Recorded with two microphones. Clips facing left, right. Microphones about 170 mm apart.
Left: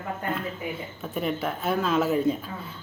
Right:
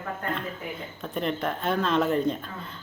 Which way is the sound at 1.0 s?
5° left (ahead or behind).